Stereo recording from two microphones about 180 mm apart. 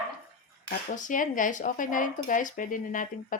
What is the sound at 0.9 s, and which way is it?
Speech, 45° left (ahead or behind).